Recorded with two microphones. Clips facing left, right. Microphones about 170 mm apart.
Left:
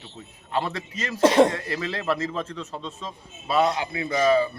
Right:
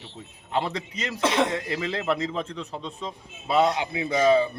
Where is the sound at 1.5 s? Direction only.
10° right (ahead or behind).